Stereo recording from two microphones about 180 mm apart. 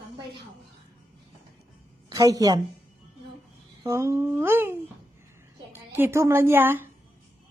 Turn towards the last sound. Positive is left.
turn(degrees=-10)  # may be behind; listen again after turning